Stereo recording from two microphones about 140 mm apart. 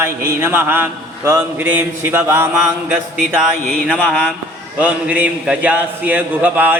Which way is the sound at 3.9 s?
5° left (ahead or behind).